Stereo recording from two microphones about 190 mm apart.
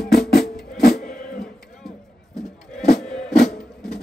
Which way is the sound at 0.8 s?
55° left (ahead or behind).